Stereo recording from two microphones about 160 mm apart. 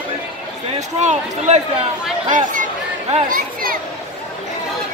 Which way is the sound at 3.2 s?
60° right (ahead or behind).